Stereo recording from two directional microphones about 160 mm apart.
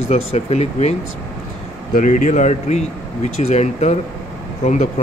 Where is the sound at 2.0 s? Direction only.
50° left (ahead or behind).